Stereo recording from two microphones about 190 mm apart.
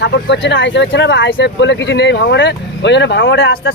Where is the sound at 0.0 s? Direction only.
65° left (ahead or behind).